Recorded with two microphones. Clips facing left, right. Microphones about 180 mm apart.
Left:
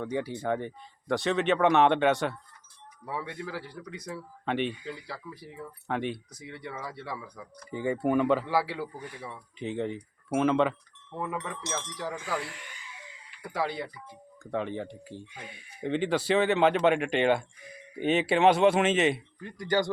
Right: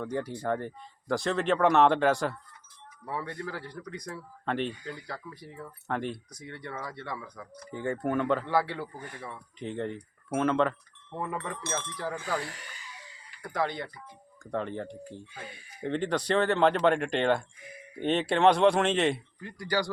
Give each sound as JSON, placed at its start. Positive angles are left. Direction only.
{"t": 0.0, "sound": "speech", "side_deg": 0}
{"t": 9.0, "sound": "speech", "side_deg": -50}
{"t": 9.2, "sound": "speech", "side_deg": 5}
{"t": 11.6, "sound": "wind chime", "side_deg": -55}
{"t": 11.9, "sound": "speech", "side_deg": 5}
{"t": 12.4, "sound": "a sound", "side_deg": -40}
{"t": 13.4, "sound": "speech", "side_deg": 5}
{"t": 15.3, "sound": "speech", "side_deg": 15}
{"t": 15.9, "sound": "speech", "side_deg": 5}
{"t": 19.4, "sound": "speech", "side_deg": 20}